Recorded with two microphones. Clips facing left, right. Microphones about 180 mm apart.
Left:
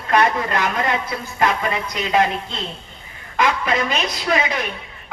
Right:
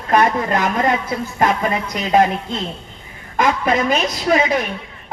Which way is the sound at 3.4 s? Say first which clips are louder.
Right 3 dB; 45° right (ahead or behind).